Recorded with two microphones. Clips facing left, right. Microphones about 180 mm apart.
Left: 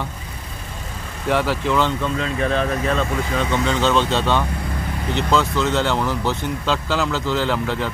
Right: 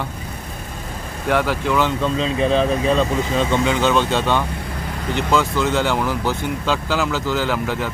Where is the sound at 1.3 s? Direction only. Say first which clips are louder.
Right 1 dB; centre (ahead or behind).